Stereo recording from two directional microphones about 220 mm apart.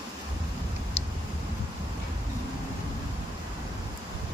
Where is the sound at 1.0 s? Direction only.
30° left (ahead or behind).